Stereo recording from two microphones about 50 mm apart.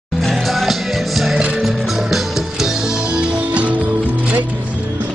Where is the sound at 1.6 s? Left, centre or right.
Centre; by 3.7 s right.